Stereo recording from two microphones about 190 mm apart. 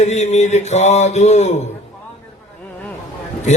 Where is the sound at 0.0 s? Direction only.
35° left (ahead or behind).